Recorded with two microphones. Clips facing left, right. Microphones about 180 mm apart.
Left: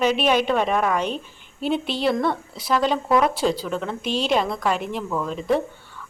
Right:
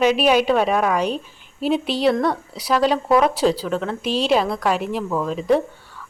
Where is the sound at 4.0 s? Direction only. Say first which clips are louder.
Right 3 dB; 35° right (ahead or behind).